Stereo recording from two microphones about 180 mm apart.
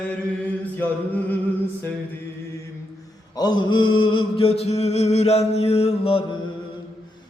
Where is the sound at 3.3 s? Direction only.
25° left (ahead or behind).